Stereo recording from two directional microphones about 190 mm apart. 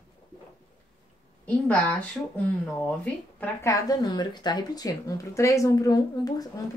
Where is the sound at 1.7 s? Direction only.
5° left (ahead or behind).